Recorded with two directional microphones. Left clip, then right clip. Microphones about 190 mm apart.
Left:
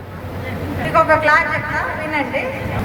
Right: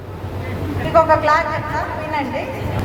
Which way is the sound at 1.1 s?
25° left (ahead or behind).